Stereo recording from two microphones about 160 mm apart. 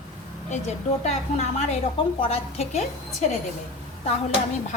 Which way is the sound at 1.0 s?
45° left (ahead or behind).